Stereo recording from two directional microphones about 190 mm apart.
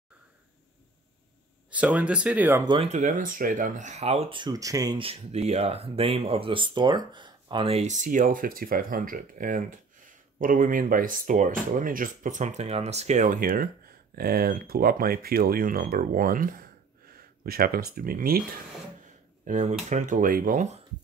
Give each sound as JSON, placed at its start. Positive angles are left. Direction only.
{"t": 1.7, "sound": "speech", "side_deg": -5}
{"t": 2.6, "sound": "speech", "side_deg": -25}
{"t": 2.9, "sound": "speech", "side_deg": -40}
{"t": 19.4, "sound": "speech", "side_deg": -40}